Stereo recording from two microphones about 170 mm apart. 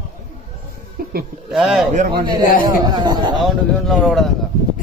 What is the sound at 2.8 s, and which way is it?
Speech, 25° right (ahead or behind).